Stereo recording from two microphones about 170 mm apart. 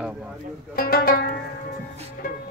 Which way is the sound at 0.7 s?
60° left (ahead or behind).